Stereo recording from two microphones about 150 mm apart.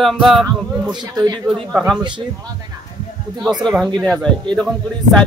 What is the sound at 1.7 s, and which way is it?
Speech, centre (ahead or behind).